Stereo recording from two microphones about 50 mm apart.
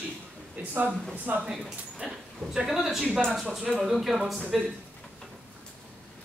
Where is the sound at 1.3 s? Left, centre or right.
Right.